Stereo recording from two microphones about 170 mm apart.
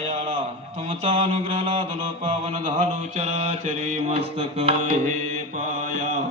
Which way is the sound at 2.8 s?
45° right (ahead or behind).